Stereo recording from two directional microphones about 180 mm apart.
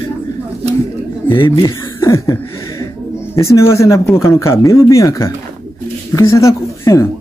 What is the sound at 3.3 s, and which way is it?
Speech, 15° left (ahead or behind).